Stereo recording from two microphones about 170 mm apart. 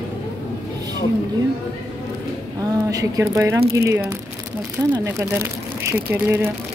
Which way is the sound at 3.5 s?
70° right (ahead or behind).